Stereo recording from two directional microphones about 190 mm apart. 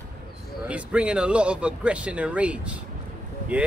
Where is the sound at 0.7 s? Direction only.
5° right (ahead or behind).